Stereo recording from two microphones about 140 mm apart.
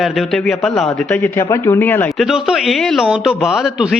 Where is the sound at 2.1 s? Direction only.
Centre (ahead or behind).